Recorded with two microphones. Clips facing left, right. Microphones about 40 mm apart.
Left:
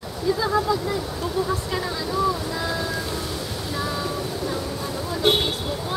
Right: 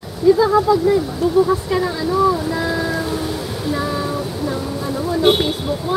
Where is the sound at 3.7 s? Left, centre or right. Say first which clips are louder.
Right 6 dB; centre.